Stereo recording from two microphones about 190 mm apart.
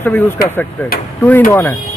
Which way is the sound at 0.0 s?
10° left (ahead or behind).